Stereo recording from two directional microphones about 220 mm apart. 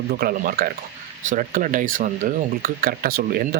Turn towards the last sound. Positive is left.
turn(degrees=-45)  # may be behind; listen again after turning